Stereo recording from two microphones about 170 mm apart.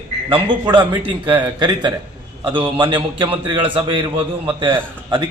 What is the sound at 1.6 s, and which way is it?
A man's voice, 25° right (ahead or behind).